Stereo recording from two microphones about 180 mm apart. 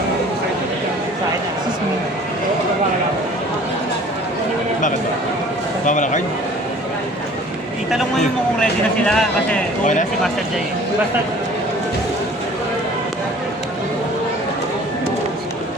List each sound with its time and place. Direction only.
5.8 s a man's voice: 45° left (ahead or behind)
7.9 s speech: centre (ahead or behind)
9.8 s a man's voice: 45° left (ahead or behind)